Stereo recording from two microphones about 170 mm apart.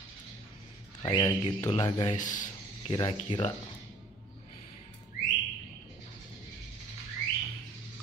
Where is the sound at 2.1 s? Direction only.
50° left (ahead or behind).